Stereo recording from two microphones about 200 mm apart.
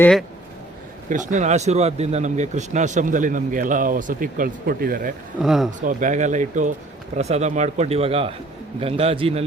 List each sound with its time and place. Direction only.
0.0 s speech: 5° left (ahead or behind)
1.1 s speech: 40° right (ahead or behind)
5.4 s speech: centre (ahead or behind)
5.8 s a man's voice: 40° right (ahead or behind)